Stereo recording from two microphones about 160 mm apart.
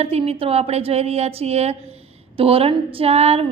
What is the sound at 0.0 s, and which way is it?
A woman's voice, 40° right (ahead or behind).